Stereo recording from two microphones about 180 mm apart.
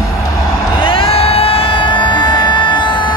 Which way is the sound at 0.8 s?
30° left (ahead or behind).